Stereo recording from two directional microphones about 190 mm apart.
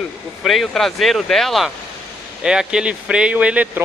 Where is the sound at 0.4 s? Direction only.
Centre (ahead or behind).